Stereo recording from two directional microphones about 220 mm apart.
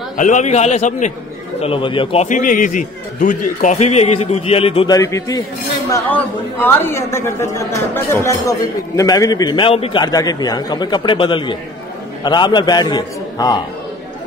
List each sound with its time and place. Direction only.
0.2 s a man's voice: 35° left (ahead or behind); by 13.6 s 15° left (ahead or behind)